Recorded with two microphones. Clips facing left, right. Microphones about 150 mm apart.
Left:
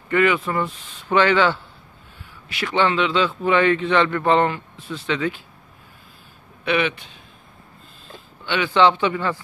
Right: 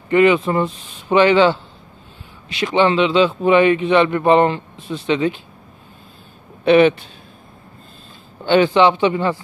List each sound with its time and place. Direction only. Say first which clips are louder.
0.1 s a man's voice: right 6 dB; 20° right (ahead or behind)
6.6 s a man's voice: right 10 dB; 35° right (ahead or behind)
8.5 s a man's voice: right 10 dB; 35° right (ahead or behind)
8.7 s a man's voice: right 3 dB; 15° right (ahead or behind)